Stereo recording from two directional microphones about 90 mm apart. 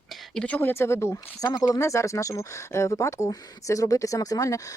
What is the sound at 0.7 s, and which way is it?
Speech, 30° left (ahead or behind).